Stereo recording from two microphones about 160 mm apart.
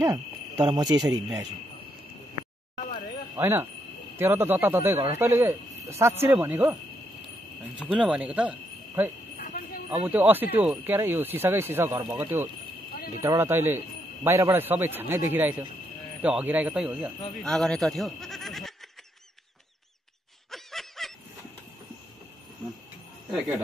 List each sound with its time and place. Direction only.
0.0 s cricket: 20° right (ahead or behind)
3.3 s speech: 15° right (ahead or behind)
7.8 s speech: 5° right (ahead or behind)
9.4 s a sound: 55° left (ahead or behind)
9.8 s speech: 10° right (ahead or behind)
20.5 s snicker: centre (ahead or behind)